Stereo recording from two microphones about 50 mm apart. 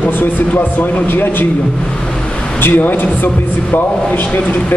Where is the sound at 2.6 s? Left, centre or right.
Left.